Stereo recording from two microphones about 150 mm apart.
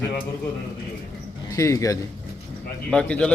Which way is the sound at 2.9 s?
5° left (ahead or behind).